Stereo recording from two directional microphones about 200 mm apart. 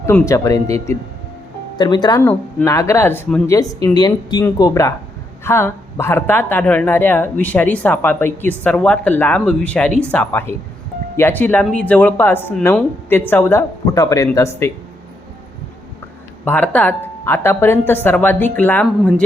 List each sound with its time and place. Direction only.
0.0 s speech: 10° left (ahead or behind)
2.2 s speech: 5° left (ahead or behind)
16.4 s speech: 5° left (ahead or behind)